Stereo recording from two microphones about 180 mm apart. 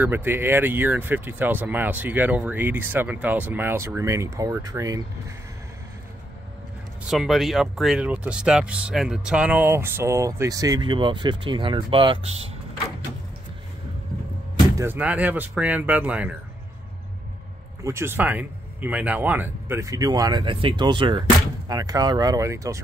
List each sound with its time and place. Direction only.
0.0 s speech: 10° right (ahead or behind)
7.1 s speech: centre (ahead or behind); by 12.4 s 30° right (ahead or behind)
14.8 s speech: 10° right (ahead or behind)
17.8 s speech: 15° right (ahead or behind)